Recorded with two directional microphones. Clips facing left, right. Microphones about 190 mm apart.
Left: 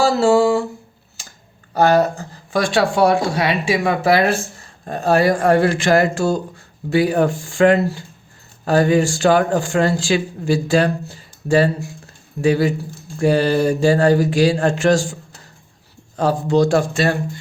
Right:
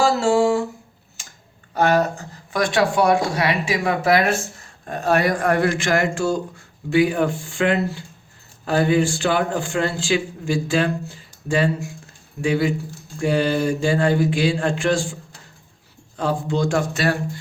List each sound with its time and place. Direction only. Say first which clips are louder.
0.0 s a sound: left 3 dB; 35° left (ahead or behind)
1.7 s speech: left 4 dB; 35° left (ahead or behind)
16.1 s speech: left 6 dB; 40° left (ahead or behind)